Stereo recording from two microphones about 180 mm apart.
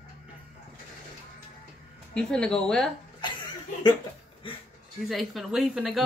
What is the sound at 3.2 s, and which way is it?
Chuckle, 25° left (ahead or behind).